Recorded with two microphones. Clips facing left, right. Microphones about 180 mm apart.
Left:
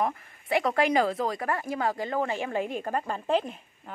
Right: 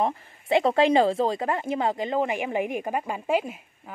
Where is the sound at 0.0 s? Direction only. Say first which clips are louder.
Right 3 dB; 25° right (ahead or behind).